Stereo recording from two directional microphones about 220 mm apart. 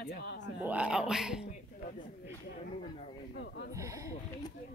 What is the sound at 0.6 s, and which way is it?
Speech, 5° right (ahead or behind).